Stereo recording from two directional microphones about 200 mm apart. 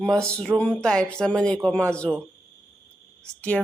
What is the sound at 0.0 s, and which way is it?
Speech, 5° left (ahead or behind).